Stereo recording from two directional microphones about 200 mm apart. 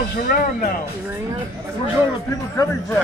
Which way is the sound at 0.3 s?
45° left (ahead or behind).